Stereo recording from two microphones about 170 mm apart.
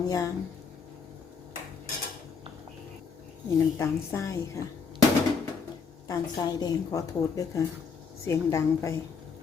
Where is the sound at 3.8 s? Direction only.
15° left (ahead or behind).